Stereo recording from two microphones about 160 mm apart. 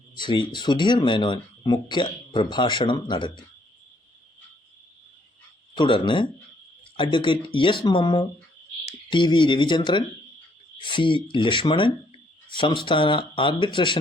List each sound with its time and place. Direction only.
0.2 s speech: 30° left (ahead or behind)
5.7 s speech: 30° left (ahead or behind)